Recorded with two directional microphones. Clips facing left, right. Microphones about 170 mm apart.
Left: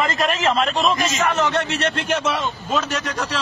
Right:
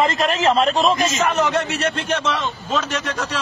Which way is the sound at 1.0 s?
Centre (ahead or behind).